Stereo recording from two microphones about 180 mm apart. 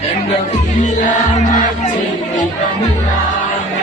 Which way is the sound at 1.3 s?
45° left (ahead or behind).